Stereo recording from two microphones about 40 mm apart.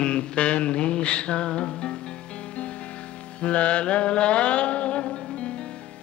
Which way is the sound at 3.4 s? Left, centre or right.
Left.